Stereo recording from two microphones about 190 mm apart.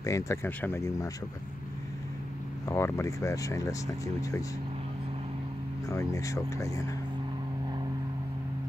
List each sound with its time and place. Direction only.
0.0 s speech: 15° left (ahead or behind)
2.6 s speech: 15° left (ahead or behind)
5.9 s speech: 15° left (ahead or behind)